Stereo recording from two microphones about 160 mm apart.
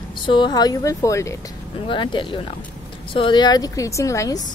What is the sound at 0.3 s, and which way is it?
A woman's voice, 30° left (ahead or behind).